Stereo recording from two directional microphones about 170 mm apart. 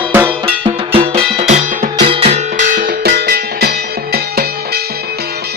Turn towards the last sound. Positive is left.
turn(degrees=-65)  # may be behind; listen again after turning